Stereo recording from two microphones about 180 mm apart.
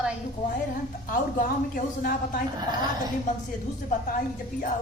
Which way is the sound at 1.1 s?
50° left (ahead or behind).